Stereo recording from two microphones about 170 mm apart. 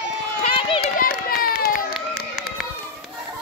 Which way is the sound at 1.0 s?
60° left (ahead or behind).